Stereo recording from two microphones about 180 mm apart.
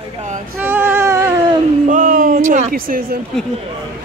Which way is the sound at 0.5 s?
10° right (ahead or behind).